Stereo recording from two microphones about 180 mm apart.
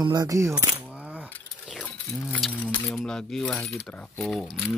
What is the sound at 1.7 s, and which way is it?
Keys jangling, 5° left (ahead or behind).